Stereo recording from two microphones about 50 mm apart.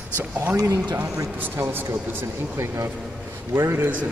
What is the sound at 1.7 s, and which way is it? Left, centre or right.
Speech, right.